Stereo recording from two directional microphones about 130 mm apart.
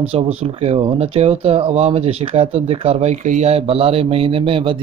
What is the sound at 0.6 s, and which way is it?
A man's voice, 50° right (ahead or behind).